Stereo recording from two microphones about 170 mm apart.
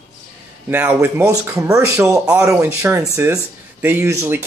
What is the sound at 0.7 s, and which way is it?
Speech, 10° right (ahead or behind).